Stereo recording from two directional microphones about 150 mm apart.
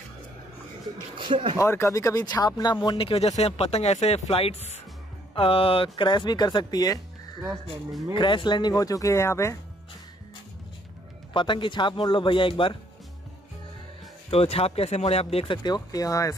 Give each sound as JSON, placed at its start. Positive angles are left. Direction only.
{"t": 1.1, "sound": "speech", "side_deg": -35}
{"t": 1.6, "sound": "speech", "side_deg": 20}
{"t": 8.1, "sound": "speech", "side_deg": 30}
{"t": 11.3, "sound": "speech", "side_deg": 30}
{"t": 14.3, "sound": "speech", "side_deg": 40}